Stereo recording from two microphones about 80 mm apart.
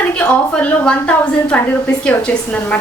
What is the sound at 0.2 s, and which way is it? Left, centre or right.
A woman's voice, centre.